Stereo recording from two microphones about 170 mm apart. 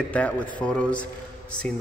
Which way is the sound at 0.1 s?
10° left (ahead or behind).